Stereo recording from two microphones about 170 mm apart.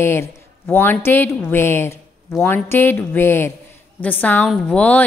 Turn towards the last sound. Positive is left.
turn(degrees=10)  # may be behind; listen again after turning